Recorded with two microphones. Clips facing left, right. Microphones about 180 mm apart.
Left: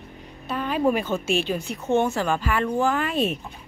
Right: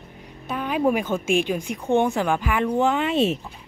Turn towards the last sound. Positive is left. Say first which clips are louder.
# right 3 dB
turn(degrees=-25)  # may be behind; listen again after turning